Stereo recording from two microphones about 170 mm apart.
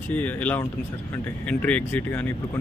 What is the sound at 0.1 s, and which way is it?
Speech, 10° left (ahead or behind).